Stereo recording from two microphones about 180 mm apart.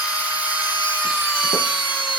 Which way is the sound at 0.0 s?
10° right (ahead or behind).